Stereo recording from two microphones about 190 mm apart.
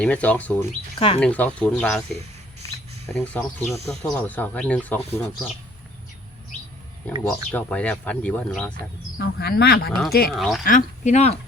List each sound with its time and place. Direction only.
0.0 s speech: 5° left (ahead or behind)
0.9 s speech: 30° left (ahead or behind)
1.2 s speech: 5° left (ahead or behind)
7.5 s speech: 5° left (ahead or behind)
9.1 s speech: 55° left (ahead or behind)
10.3 s speech: centre (ahead or behind)
10.7 s speech: 40° left (ahead or behind)